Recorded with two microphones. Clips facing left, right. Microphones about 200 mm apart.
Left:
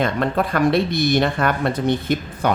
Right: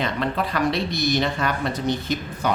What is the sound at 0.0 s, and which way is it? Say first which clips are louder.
Speech: left 4 dB; 50° left (ahead or behind).